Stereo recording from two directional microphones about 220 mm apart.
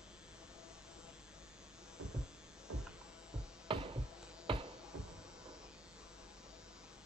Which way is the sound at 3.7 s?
25° right (ahead or behind).